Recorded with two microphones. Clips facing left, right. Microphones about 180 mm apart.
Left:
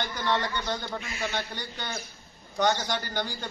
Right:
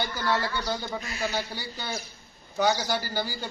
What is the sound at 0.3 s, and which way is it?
A man's voice, 5° right (ahead or behind).